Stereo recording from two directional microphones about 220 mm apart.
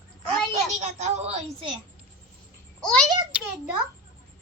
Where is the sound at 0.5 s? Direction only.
30° right (ahead or behind).